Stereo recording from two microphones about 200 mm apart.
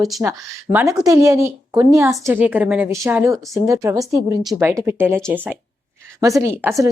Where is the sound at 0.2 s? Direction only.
10° right (ahead or behind).